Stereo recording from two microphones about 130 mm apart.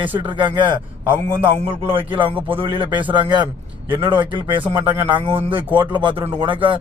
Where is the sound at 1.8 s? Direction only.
45° right (ahead or behind).